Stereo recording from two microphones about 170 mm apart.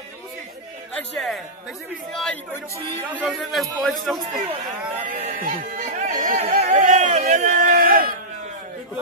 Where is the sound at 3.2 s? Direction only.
Centre (ahead or behind).